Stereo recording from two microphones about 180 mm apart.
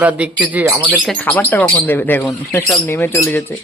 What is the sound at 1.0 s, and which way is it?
Speech, 5° left (ahead or behind).